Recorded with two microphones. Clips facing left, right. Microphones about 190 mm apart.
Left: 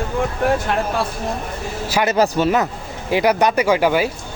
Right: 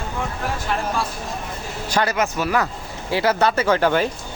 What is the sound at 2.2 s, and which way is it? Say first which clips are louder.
Speech: left 5 dB; 25° left (ahead or behind).